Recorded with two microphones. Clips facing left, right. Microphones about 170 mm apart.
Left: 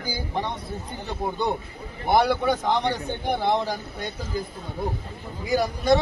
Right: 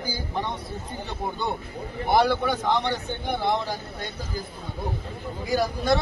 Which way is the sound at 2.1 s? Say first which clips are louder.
Left 1 dB; 15° left (ahead or behind).